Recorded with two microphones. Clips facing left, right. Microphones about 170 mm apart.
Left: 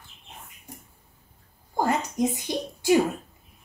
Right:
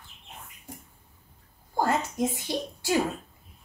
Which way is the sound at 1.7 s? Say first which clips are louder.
Left 1 dB; 15° left (ahead or behind).